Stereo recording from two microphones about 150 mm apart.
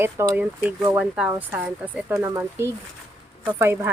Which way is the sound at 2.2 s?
20° right (ahead or behind).